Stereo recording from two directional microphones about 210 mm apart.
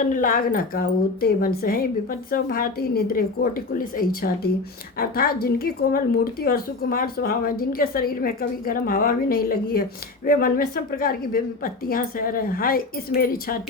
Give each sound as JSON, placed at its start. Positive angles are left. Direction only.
{"t": 0.0, "sound": "a woman's voice", "side_deg": 40}